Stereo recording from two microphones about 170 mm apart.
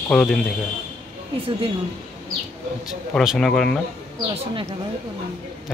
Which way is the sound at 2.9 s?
Centre (ahead or behind).